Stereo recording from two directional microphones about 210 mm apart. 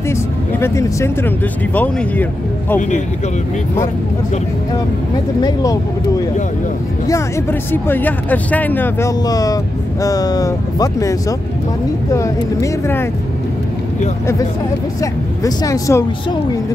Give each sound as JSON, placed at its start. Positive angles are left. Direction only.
{"t": 0.1, "sound": "music", "side_deg": 15}
{"t": 5.4, "sound": "speech", "side_deg": 15}
{"t": 15.0, "sound": "speech", "side_deg": 15}